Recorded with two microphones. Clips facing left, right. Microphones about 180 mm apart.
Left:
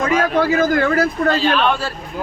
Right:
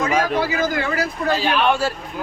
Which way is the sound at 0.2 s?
55° left (ahead or behind).